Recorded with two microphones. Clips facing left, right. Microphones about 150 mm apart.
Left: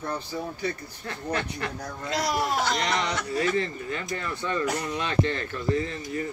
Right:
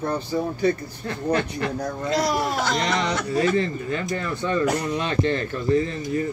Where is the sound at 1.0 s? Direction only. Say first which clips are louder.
Right 7 dB; 30° right (ahead or behind).